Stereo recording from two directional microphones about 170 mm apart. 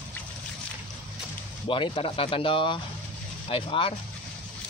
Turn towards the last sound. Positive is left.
turn(degrees=30)  # may be behind; listen again after turning